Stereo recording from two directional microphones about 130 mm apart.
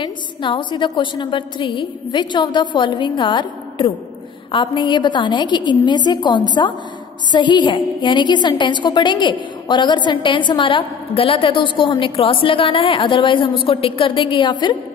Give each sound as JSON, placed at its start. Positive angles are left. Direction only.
{"t": 0.0, "sound": "a woman's voice", "side_deg": 35}